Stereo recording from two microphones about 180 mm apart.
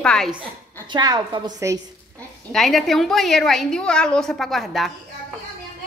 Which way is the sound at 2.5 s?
Centre (ahead or behind).